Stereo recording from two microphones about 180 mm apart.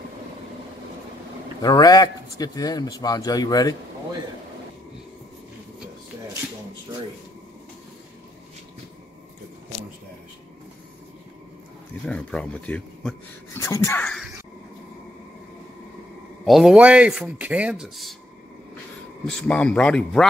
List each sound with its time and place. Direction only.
1.6 s a man's voice: 20° left (ahead or behind)
12.1 s speech: 5° left (ahead or behind)
13.6 s speech: 15° left (ahead or behind)
16.4 s speech: centre (ahead or behind)
19.2 s speech: 5° left (ahead or behind)